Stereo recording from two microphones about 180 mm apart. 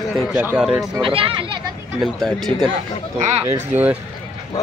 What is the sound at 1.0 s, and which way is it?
Speech, 30° right (ahead or behind).